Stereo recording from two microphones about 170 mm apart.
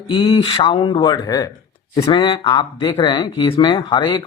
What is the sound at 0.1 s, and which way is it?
Speech, 30° left (ahead or behind).